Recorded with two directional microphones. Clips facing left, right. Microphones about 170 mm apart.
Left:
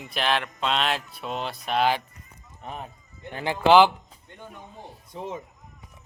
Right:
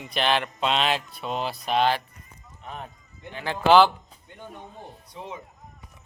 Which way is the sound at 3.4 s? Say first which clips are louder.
Left 1 dB; 15° left (ahead or behind).